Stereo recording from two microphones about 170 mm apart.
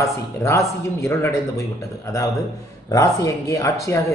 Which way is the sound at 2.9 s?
20° left (ahead or behind).